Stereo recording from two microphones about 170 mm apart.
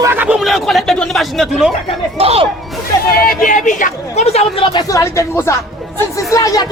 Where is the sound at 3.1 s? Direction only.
55° left (ahead or behind).